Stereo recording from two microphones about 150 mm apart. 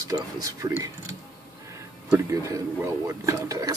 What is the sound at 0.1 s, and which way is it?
Speech, 25° right (ahead or behind).